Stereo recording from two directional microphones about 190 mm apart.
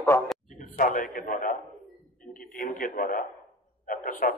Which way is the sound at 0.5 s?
45° left (ahead or behind).